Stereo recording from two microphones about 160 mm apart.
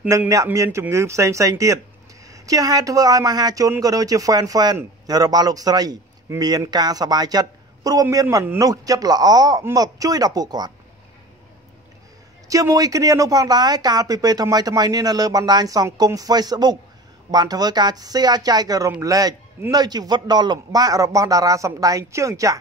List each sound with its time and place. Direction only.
0.1 s speech: 20° right (ahead or behind)
12.4 s speech: 20° right (ahead or behind)